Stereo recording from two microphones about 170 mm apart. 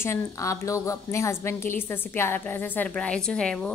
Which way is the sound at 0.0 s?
15° left (ahead or behind).